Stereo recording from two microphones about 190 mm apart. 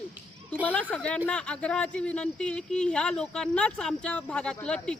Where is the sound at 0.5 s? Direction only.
5° left (ahead or behind).